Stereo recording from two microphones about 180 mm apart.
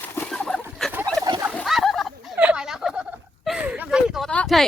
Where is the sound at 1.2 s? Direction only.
20° right (ahead or behind).